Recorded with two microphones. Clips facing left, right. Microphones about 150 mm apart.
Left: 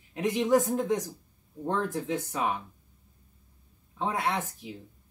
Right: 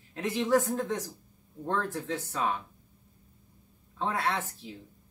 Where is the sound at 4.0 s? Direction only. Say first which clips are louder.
Left 1 dB; 15° left (ahead or behind).